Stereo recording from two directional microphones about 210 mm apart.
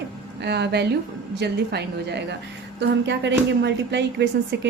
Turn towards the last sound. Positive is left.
turn(degrees=-55)  # may be behind; listen again after turning